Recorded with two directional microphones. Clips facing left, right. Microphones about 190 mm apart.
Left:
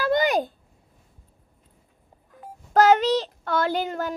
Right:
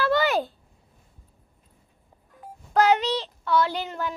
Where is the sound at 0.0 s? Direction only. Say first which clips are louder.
Left 1 dB; 15° left (ahead or behind).